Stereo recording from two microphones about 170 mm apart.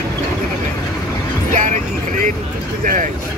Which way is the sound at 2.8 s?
50° right (ahead or behind).